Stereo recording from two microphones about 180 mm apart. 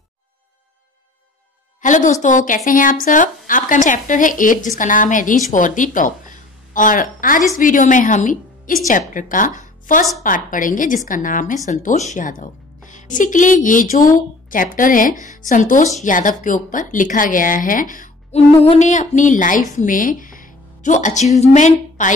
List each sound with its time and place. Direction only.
1.8 s a woman's voice: 45° left (ahead or behind)